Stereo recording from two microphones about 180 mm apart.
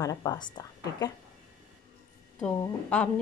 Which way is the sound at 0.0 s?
20° left (ahead or behind).